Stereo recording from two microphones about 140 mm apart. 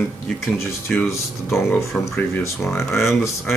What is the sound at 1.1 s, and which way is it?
Speech, 20° left (ahead or behind).